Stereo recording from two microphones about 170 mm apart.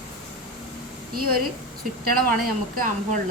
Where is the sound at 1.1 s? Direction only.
60° right (ahead or behind).